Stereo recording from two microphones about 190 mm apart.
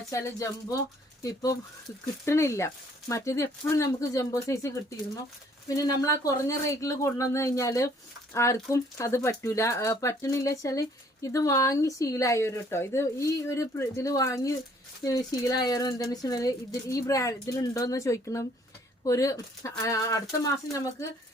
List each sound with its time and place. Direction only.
0.1 s speech: 15° left (ahead or behind)